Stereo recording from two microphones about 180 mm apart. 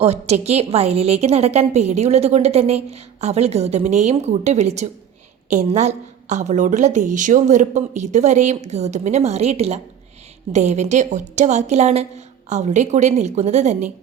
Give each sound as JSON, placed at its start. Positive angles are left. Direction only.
{"t": 0.0, "sound": "a woman's voice", "side_deg": -35}